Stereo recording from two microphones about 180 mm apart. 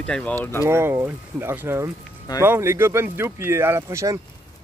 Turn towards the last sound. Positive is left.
turn(degrees=-15)  # may be behind; listen again after turning